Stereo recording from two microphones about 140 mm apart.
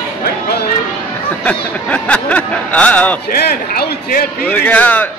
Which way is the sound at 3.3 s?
90° left.